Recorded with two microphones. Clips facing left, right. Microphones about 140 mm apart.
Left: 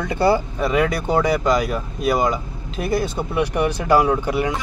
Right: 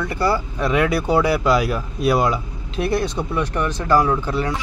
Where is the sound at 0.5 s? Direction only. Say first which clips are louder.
Even; centre (ahead or behind).